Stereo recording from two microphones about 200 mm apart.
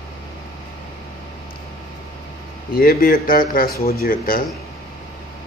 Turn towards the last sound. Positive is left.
turn(degrees=45)  # may be behind; listen again after turning